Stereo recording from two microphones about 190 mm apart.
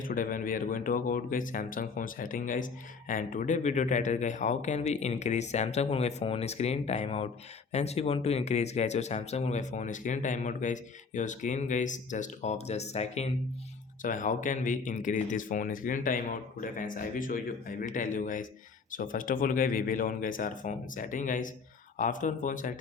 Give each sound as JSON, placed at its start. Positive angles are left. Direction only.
{"t": 0.0, "sound": "speech", "side_deg": 45}